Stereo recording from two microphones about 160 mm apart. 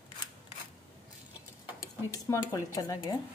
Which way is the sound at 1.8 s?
20° left (ahead or behind).